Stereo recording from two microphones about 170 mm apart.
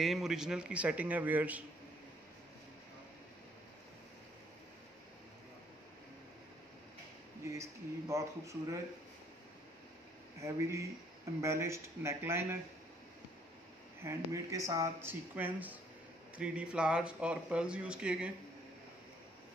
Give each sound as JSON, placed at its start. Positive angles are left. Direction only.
{"t": 0.0, "sound": "speech", "side_deg": 0}
{"t": 7.5, "sound": "speech", "side_deg": -15}
{"t": 10.4, "sound": "speech", "side_deg": -20}
{"t": 14.0, "sound": "speech", "side_deg": -20}